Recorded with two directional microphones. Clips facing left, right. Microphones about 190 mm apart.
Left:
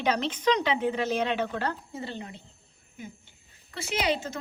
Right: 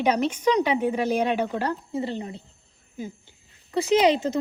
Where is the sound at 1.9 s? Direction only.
25° right (ahead or behind).